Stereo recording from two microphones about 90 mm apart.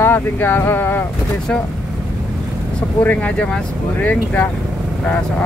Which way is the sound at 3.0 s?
15° left (ahead or behind).